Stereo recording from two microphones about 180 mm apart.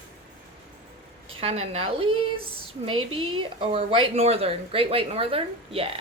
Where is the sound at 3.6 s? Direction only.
30° right (ahead or behind).